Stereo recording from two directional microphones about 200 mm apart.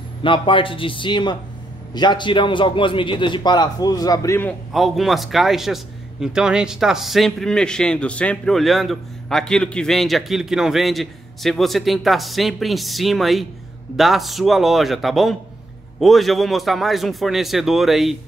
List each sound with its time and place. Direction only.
0.2 s a man's voice: 25° left (ahead or behind)
4.7 s a man's voice: centre (ahead or behind)